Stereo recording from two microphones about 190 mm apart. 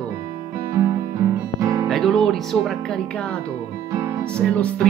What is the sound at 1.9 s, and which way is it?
Speech, centre (ahead or behind).